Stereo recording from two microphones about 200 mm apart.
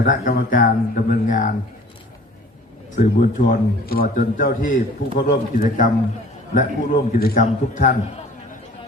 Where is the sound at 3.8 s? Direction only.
50° left (ahead or behind).